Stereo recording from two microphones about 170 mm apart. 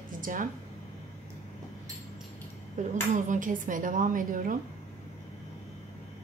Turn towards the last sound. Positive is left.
turn(degrees=-50)  # may be behind; listen again after turning